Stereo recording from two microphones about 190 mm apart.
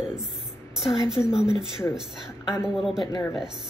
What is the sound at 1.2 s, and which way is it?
A woman's voice, 5° right (ahead or behind).